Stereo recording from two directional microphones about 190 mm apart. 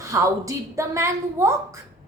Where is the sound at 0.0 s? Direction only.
15° right (ahead or behind).